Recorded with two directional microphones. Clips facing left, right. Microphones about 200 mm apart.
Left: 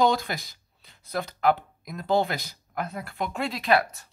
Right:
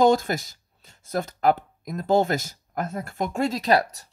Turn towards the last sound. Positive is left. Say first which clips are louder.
# right 2 dB
turn(degrees=-40)  # may be behind; listen again after turning